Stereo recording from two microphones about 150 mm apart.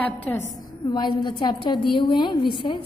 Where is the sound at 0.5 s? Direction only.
25° left (ahead or behind).